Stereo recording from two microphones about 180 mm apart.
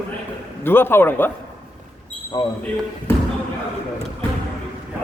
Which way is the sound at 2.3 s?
20° left (ahead or behind).